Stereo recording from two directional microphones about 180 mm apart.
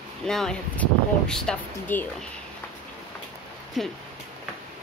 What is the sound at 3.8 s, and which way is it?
Speech, centre (ahead or behind).